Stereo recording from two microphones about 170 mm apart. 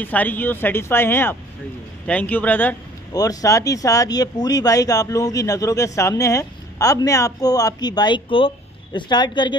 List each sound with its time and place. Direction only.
0.0 s speech: 10° left (ahead or behind)
3.1 s speech: 20° left (ahead or behind)